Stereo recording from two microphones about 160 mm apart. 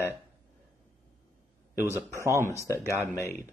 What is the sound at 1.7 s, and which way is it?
Speech, 15° right (ahead or behind).